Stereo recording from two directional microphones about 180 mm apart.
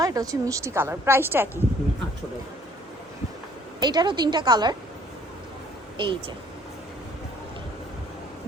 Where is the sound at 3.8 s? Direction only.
25° right (ahead or behind).